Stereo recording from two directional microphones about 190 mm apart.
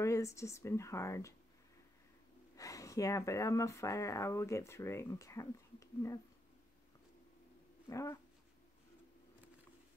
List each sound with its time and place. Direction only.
0.0 s speech: 15° left (ahead or behind)
2.5 s speech: 20° left (ahead or behind)
7.9 s speech: 15° left (ahead or behind)